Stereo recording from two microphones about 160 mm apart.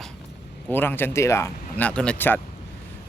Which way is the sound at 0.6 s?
15° left (ahead or behind).